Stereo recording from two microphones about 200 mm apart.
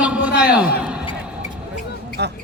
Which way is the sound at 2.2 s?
55° right (ahead or behind).